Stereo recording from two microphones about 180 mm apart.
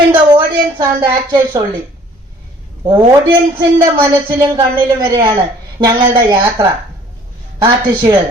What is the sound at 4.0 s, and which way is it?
A woman's voice, 20° right (ahead or behind).